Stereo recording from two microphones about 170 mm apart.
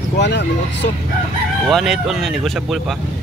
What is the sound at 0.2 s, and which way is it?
Speech, 90° left.